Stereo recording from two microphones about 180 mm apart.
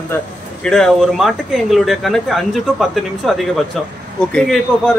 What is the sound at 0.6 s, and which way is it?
A man's voice, 5° left (ahead or behind).